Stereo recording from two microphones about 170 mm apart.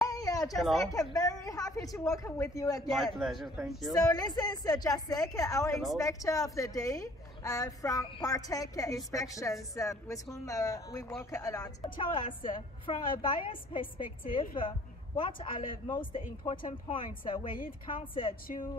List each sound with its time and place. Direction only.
0.0 s a sound: 20° left (ahead or behind)
0.6 s speech: centre (ahead or behind)
0.9 s a woman's voice: 20° left (ahead or behind)
2.9 s speech: centre (ahead or behind)
3.9 s a woman's voice: 25° left (ahead or behind)
13.9 s a woman's voice: 55° left (ahead or behind)
14.5 s a woman's voice: 30° left (ahead or behind)
15.5 s a woman's voice: 55° left (ahead or behind)
16.6 s speech: 30° left (ahead or behind)